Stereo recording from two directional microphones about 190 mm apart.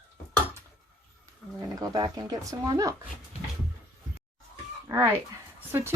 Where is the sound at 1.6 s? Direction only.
20° right (ahead or behind).